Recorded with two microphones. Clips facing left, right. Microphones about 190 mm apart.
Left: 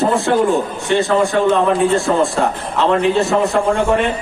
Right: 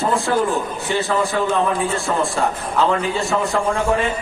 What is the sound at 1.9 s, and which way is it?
A man's voice, centre (ahead or behind).